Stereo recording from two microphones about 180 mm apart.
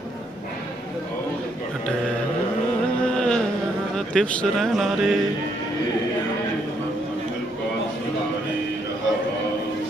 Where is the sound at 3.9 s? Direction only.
5° left (ahead or behind).